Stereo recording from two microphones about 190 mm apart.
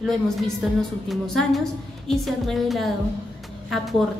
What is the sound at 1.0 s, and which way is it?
A woman's voice, centre (ahead or behind).